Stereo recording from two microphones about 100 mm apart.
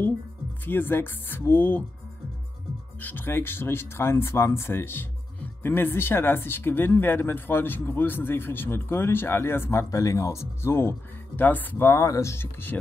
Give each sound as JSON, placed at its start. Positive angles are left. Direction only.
{"t": 0.7, "sound": "speech", "side_deg": 20}
{"t": 3.0, "sound": "speech", "side_deg": 20}